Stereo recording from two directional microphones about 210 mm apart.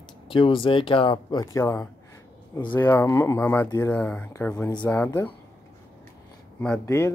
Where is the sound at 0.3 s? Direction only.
25° left (ahead or behind); by 5.2 s 10° left (ahead or behind).